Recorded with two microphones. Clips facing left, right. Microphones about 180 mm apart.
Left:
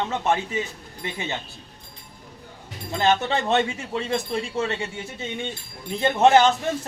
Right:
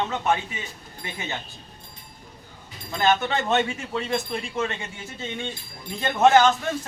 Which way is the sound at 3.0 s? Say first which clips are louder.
Left 1 dB; 30° left (ahead or behind).